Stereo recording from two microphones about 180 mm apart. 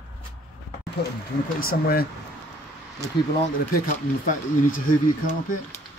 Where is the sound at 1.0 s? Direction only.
70° left (ahead or behind).